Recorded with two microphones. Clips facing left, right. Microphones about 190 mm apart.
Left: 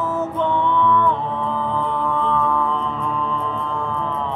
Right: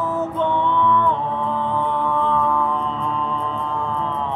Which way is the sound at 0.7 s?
15° right (ahead or behind).